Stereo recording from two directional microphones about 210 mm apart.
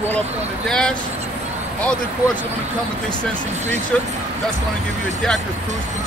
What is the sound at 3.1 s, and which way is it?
Speech, 5° left (ahead or behind).